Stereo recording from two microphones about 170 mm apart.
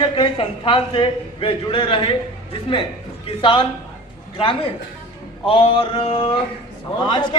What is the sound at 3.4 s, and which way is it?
Speech, 30° left (ahead or behind).